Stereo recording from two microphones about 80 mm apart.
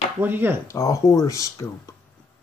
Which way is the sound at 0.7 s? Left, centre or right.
Left.